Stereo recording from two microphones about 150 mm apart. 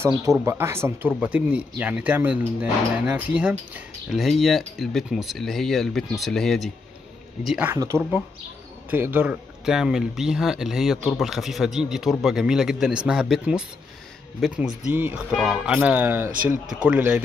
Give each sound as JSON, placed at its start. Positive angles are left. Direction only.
{"t": 0.0, "sound": "speech", "side_deg": -20}
{"t": 7.7, "sound": "speech", "side_deg": -20}
{"t": 15.3, "sound": "speech", "side_deg": 0}